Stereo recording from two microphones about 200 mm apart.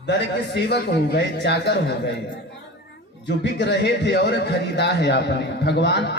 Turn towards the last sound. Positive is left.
turn(degrees=60)  # may be behind; listen again after turning